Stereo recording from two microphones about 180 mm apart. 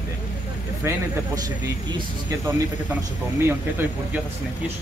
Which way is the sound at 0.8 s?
15° right (ahead or behind).